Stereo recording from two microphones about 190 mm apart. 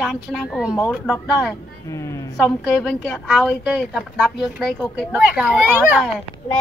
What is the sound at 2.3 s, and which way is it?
Speech, centre (ahead or behind).